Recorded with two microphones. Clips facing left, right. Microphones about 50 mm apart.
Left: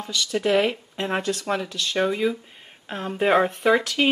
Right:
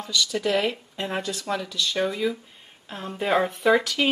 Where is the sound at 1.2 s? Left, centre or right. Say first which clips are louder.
Left 3 dB; left.